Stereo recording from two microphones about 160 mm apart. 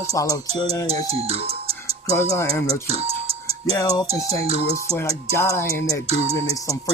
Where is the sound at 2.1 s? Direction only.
15° left (ahead or behind).